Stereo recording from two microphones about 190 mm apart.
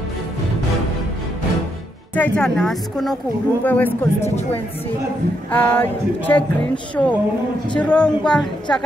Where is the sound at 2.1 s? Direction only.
5° left (ahead or behind).